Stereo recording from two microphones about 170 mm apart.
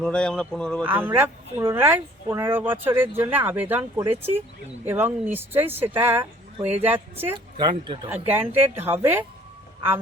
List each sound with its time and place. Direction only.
0.0 s speech: 5° left (ahead or behind)
0.9 s speech: 10° right (ahead or behind)
7.3 s speech: 30° right (ahead or behind)
8.1 s speech: 10° right (ahead or behind)